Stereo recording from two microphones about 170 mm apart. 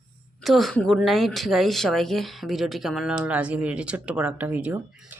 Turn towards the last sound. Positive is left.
turn(degrees=-10)  # may be behind; listen again after turning